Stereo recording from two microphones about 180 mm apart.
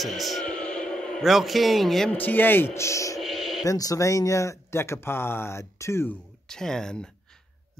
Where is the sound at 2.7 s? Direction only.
15° left (ahead or behind).